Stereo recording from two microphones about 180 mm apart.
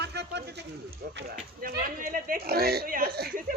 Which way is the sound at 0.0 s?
70° right (ahead or behind).